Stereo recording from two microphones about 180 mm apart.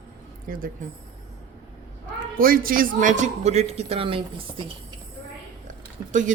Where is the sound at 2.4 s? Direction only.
55° right (ahead or behind); by 4.6 s 30° right (ahead or behind).